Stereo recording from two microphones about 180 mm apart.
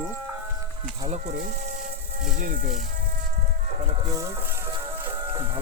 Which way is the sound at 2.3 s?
45° right (ahead or behind).